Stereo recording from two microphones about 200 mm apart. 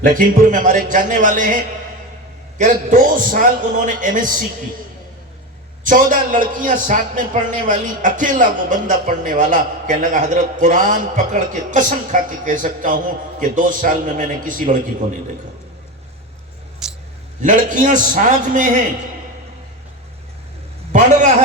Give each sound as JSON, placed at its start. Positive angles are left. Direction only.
{"t": 0.0, "sound": "a man's voice", "side_deg": -40}
{"t": 2.6, "sound": "a man's voice", "side_deg": -40}
{"t": 5.8, "sound": "a man's voice", "side_deg": -40}
{"t": 16.8, "sound": "vehicle", "side_deg": -5}
{"t": 17.4, "sound": "a man's voice", "side_deg": -40}